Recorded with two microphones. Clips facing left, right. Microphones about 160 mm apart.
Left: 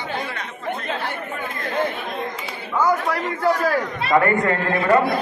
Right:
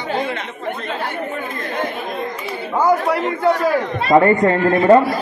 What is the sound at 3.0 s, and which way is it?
A man's voice, 25° right (ahead or behind).